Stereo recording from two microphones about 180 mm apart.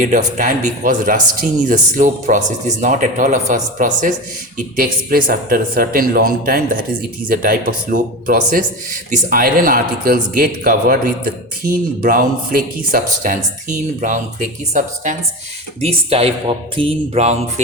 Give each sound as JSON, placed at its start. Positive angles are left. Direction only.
{"t": 0.0, "sound": "speech", "side_deg": -45}
{"t": 15.8, "sound": "speech", "side_deg": -35}